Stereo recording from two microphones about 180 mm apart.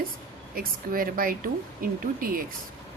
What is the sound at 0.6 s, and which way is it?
Speech, 55° right (ahead or behind).